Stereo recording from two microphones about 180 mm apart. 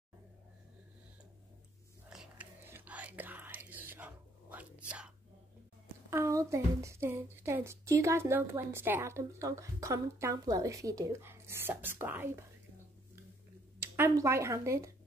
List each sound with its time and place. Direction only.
2.0 s whispering: 5° right (ahead or behind)
6.0 s a child's voice: 15° right (ahead or behind)
13.7 s speech: 15° right (ahead or behind)